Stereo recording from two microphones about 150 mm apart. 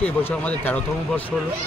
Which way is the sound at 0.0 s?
10° left (ahead or behind).